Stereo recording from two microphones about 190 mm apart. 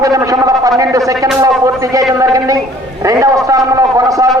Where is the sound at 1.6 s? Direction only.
15° right (ahead or behind).